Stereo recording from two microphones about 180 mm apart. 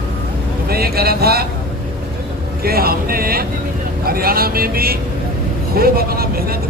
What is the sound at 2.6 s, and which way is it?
Speech, 55° right (ahead or behind).